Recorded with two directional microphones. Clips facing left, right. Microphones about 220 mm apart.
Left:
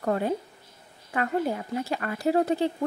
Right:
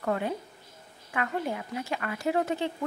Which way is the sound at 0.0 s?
35° left (ahead or behind).